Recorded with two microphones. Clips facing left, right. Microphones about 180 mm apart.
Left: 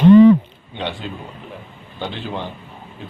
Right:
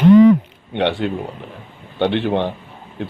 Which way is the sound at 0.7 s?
70° right (ahead or behind).